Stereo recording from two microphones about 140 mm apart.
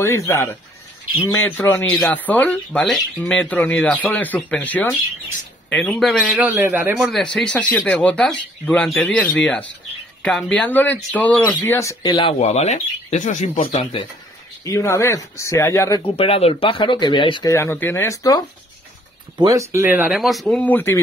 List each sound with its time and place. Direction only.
0.0 s speech: 20° left (ahead or behind); by 6.4 s centre (ahead or behind)
6.4 s a man's voice: 15° right (ahead or behind)
7.3 s speech: 5° left (ahead or behind)
11.4 s speech: 20° left (ahead or behind)
12.1 s speech: 40° left (ahead or behind); by 13.5 s 60° left (ahead or behind)
14.6 s speech: 20° left (ahead or behind)
16.2 s speech: 45° left (ahead or behind)
17.5 s speech: 20° left (ahead or behind)
19.3 s speech: 25° right (ahead or behind)
20.2 s speech: centre (ahead or behind)